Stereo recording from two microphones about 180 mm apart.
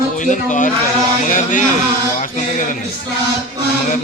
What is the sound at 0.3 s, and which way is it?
Speech, 45° left (ahead or behind).